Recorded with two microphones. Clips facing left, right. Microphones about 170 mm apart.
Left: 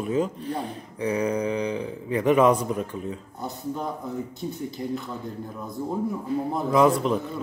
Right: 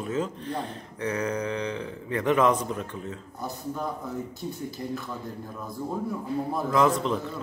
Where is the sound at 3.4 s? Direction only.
20° left (ahead or behind).